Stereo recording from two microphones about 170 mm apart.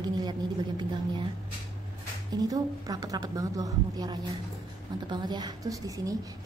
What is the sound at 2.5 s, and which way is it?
A woman's voice, 20° right (ahead or behind).